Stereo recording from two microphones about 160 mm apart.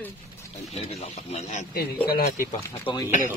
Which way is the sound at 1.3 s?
45° left (ahead or behind).